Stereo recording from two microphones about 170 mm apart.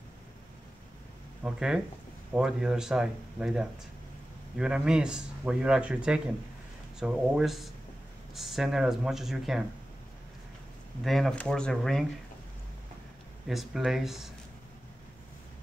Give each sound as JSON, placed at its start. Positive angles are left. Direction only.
{"t": 1.4, "sound": "speech", "side_deg": -5}
{"t": 11.1, "sound": "speech", "side_deg": 0}
{"t": 13.5, "sound": "speech", "side_deg": 0}